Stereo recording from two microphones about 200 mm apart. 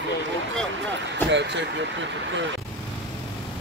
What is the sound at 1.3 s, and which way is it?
Speech, 60° right (ahead or behind).